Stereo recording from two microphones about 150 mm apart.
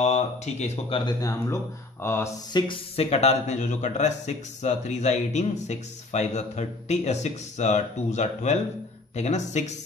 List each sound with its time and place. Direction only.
0.0 s speech: 45° left (ahead or behind)
1.2 s speech: 20° left (ahead or behind)
2.5 s a man's voice: 40° left (ahead or behind)